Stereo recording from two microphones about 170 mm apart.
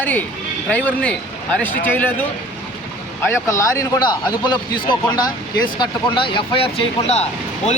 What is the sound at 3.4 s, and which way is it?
Speech, 20° left (ahead or behind).